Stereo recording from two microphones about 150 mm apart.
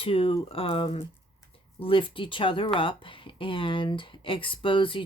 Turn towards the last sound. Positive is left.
turn(degrees=35)  # may be behind; listen again after turning